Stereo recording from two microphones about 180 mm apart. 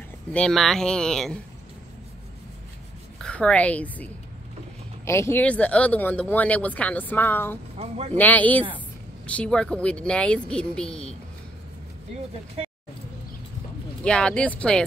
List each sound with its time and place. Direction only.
0.3 s speech: 5° left (ahead or behind)
3.2 s a woman's voice: 5° left (ahead or behind)
7.7 s speech: 35° right (ahead or behind)
8.2 s speech: 10° left (ahead or behind)
14.0 s speech: 5° left (ahead or behind)